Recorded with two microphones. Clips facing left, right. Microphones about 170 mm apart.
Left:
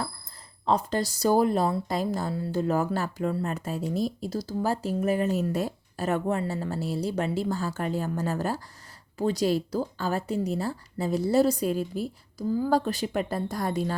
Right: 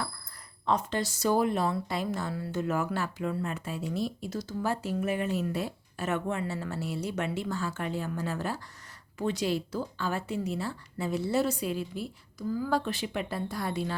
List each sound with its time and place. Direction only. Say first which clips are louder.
0.6 s speech: left 3 dB; 35° left (ahead or behind)
12.5 s speech: left 5 dB; 30° left (ahead or behind)